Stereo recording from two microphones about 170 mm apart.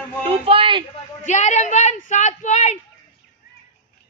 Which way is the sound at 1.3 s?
45° left (ahead or behind).